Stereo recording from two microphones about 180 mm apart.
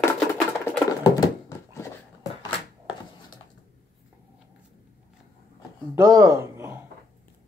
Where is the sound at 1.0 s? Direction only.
20° left (ahead or behind).